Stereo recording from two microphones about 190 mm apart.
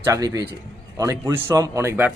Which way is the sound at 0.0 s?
15° right (ahead or behind).